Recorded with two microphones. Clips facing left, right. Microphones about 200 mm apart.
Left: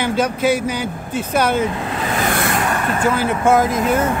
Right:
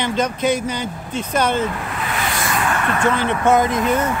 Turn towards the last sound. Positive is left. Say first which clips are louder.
# left 1 dB
turn(degrees=5)  # may be behind; listen again after turning